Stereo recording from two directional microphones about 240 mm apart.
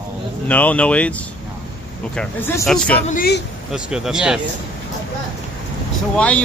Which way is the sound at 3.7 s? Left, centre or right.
Centre.